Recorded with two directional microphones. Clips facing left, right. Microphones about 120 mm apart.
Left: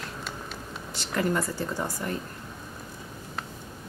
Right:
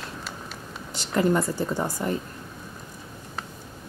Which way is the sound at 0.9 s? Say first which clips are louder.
Right 5 dB; 20° right (ahead or behind).